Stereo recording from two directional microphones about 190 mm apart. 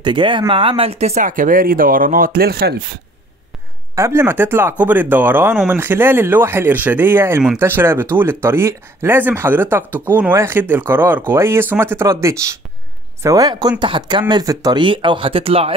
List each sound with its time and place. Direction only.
0.0 s speech: 25° right (ahead or behind); by 2.7 s 55° right (ahead or behind)
3.9 s speech: 15° right (ahead or behind); by 15.7 s 30° right (ahead or behind)